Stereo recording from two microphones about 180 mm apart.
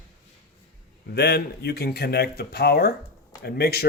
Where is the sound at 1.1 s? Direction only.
65° left (ahead or behind).